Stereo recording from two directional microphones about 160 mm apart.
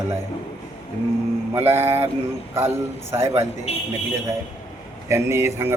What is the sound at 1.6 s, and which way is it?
Speech, 15° right (ahead or behind).